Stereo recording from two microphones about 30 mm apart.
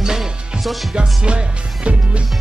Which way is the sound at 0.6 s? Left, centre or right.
Centre.